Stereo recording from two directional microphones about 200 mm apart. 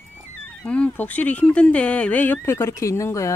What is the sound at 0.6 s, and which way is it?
Speech, 5° left (ahead or behind).